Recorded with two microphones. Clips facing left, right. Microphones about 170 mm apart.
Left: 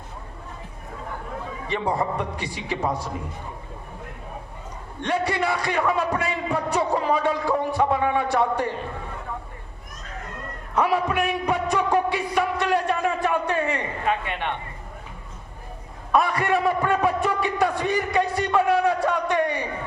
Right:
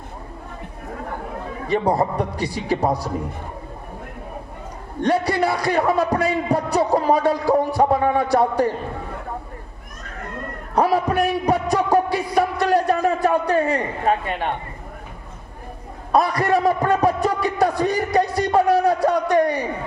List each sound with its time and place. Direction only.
1.6 s a man's voice: 40° right (ahead or behind)
4.9 s a man's voice: 35° right (ahead or behind)
10.8 s music: 35° right (ahead or behind)
16.1 s a man's voice: 35° right (ahead or behind)